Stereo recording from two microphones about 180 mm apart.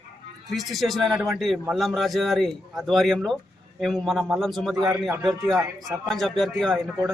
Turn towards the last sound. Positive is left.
turn(degrees=0)  # may be behind; listen again after turning